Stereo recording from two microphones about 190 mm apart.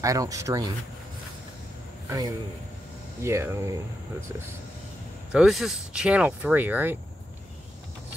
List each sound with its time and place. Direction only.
0.0 s speech: 15° right (ahead or behind)
2.0 s speech: 20° right (ahead or behind)
5.3 s speech: centre (ahead or behind)